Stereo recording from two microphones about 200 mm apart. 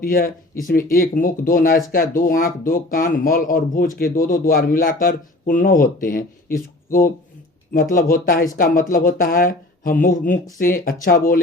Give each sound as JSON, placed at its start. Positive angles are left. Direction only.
{"t": 0.0, "sound": "speech", "side_deg": 45}